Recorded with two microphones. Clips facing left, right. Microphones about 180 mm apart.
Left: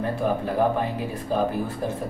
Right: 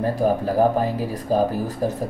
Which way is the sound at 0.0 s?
35° right (ahead or behind).